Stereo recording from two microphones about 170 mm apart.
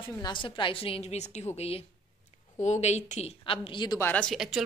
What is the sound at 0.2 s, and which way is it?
A woman's voice, 30° left (ahead or behind).